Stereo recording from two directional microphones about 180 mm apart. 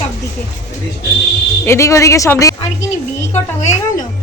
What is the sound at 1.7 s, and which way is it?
Speech, 15° left (ahead or behind).